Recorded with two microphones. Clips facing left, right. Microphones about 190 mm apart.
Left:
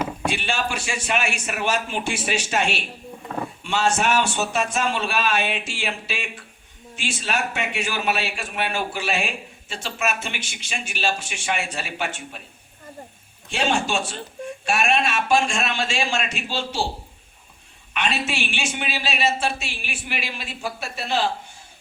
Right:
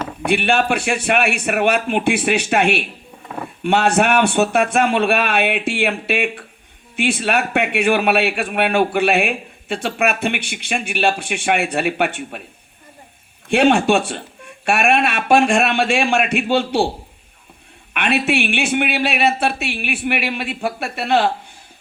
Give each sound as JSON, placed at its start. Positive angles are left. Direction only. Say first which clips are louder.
{"t": 0.3, "sound": "a man's voice", "louder": "right 13 dB", "side_deg": -60}
{"t": 13.5, "sound": "a man's voice", "louder": "right 9 dB", "side_deg": -60}
{"t": 17.9, "sound": "a man's voice", "louder": "right 8 dB", "side_deg": -60}